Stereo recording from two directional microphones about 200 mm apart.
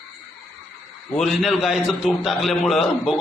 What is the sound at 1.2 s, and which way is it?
A man's voice, centre (ahead or behind).